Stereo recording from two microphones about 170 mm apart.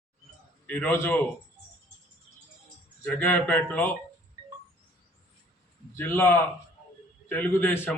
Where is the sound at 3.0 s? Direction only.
10° left (ahead or behind).